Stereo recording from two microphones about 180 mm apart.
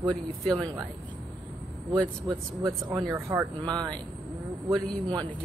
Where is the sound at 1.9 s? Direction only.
20° right (ahead or behind).